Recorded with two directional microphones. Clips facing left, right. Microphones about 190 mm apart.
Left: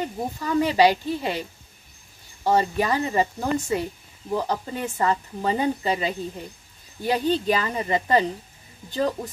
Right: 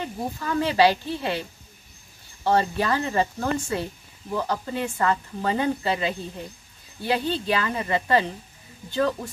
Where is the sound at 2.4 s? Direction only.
15° left (ahead or behind).